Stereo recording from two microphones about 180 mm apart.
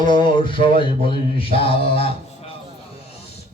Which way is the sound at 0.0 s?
25° left (ahead or behind).